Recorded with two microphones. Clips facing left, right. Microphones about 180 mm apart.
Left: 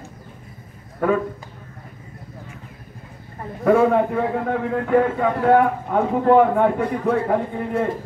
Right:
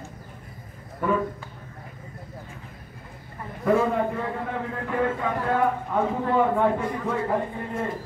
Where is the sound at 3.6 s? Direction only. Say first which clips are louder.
Left 6 dB; 60° left (ahead or behind).